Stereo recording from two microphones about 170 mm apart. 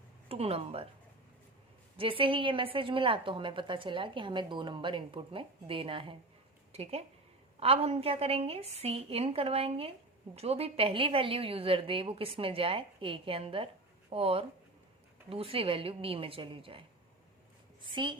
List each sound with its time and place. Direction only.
0.3 s a woman's voice: 35° right (ahead or behind)
2.0 s a woman's voice: 30° right (ahead or behind)
7.6 s a woman's voice: 35° right (ahead or behind)
17.9 s a woman's voice: 30° right (ahead or behind)